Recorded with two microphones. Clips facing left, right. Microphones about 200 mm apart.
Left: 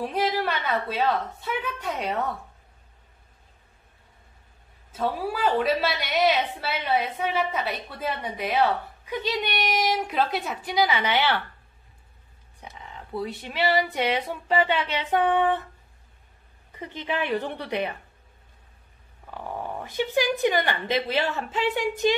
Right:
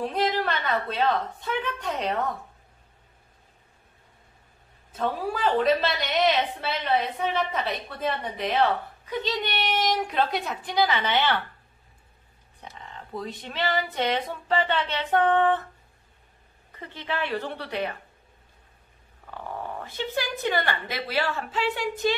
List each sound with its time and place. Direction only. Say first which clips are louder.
0.0 s a woman's voice: even; 10° left (ahead or behind)
4.9 s a woman's voice: left 1 dB; 10° left (ahead or behind)
12.7 s a woman's voice: left 3 dB; 10° left (ahead or behind)
16.7 s a woman's voice: left 3 dB; 15° left (ahead or behind)
19.3 s a woman's voice: left 2 dB; 15° left (ahead or behind)